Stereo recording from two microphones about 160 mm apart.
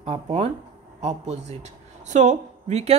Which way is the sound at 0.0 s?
45° right (ahead or behind).